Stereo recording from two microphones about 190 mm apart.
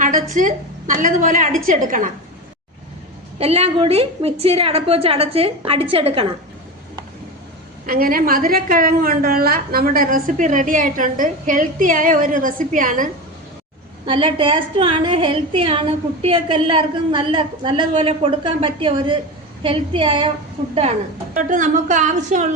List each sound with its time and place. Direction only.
0.0 s a woman's voice: 45° right (ahead or behind)
3.3 s a woman's voice: 35° right (ahead or behind)
7.9 s a woman's voice: 50° right (ahead or behind)
14.0 s a woman's voice: 25° right (ahead or behind)